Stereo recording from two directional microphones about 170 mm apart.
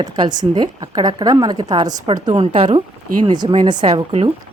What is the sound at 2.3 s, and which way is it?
A woman's voice, 35° right (ahead or behind).